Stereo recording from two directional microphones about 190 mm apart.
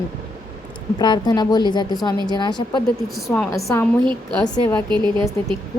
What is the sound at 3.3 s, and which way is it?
Speech, 5° left (ahead or behind).